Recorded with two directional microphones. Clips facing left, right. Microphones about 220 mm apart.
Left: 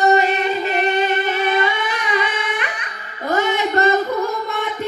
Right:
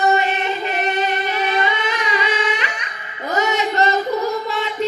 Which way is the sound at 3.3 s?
55° left (ahead or behind).